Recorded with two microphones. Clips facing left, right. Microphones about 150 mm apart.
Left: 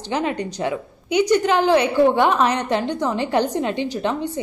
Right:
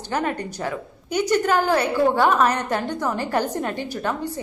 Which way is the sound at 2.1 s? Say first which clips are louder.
Left 1 dB; 20° left (ahead or behind).